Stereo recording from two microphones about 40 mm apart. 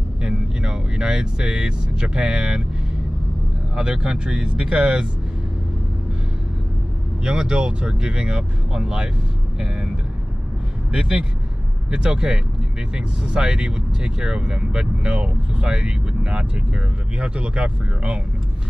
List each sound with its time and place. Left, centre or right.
0.2 s speech: right
3.7 s speech: right
7.2 s speech: right
10.9 s speech: right